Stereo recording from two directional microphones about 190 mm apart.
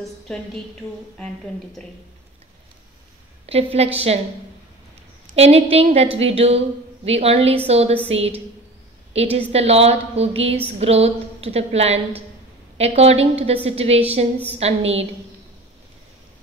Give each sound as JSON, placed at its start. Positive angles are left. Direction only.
{"t": 1.1, "sound": "a woman's voice", "side_deg": 5}
{"t": 3.4, "sound": "a woman's voice", "side_deg": -30}
{"t": 5.2, "sound": "a woman's voice", "side_deg": -35}